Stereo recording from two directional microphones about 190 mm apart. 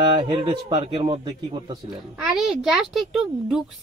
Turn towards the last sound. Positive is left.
turn(degrees=0)  # may be behind; listen again after turning